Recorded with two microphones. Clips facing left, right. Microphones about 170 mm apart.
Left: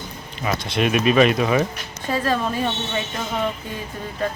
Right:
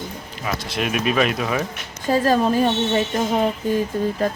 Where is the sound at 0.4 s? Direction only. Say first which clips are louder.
Left 3 dB; centre (ahead or behind).